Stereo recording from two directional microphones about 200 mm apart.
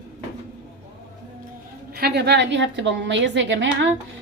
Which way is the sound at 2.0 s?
55° right (ahead or behind).